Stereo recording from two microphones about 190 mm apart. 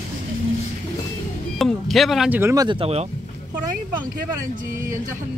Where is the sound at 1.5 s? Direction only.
Centre (ahead or behind).